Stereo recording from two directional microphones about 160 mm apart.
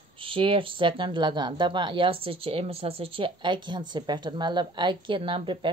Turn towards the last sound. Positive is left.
turn(degrees=-30)  # may be behind; listen again after turning